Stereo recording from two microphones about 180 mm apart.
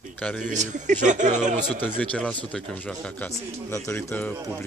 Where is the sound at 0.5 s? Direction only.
45° right (ahead or behind).